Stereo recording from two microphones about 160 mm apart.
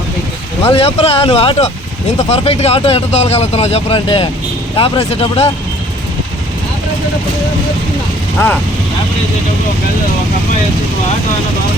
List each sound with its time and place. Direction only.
0.6 s speech: 35° left (ahead or behind)